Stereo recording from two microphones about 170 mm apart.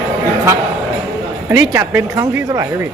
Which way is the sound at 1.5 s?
15° right (ahead or behind).